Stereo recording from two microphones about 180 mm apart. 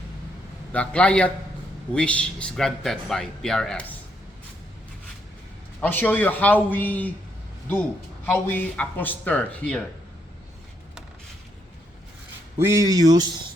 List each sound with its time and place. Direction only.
0.7 s speech: 5° left (ahead or behind)
5.8 s speech: 10° left (ahead or behind)
8.3 s speech: 10° left (ahead or behind)
12.6 s speech: 20° right (ahead or behind)